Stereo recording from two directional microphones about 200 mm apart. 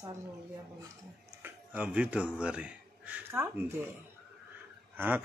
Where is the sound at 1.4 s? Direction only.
5° right (ahead or behind).